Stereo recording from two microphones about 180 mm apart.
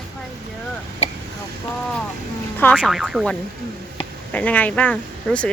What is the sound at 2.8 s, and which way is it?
A woman's voice, 5° right (ahead or behind).